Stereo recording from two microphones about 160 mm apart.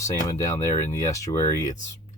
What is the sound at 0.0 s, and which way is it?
Speech, 20° left (ahead or behind).